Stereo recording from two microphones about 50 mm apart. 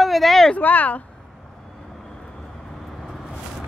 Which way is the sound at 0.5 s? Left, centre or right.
Left.